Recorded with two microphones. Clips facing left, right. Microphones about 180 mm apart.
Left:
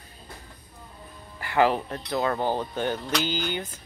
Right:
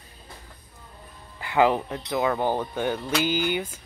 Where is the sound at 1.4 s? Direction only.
15° right (ahead or behind).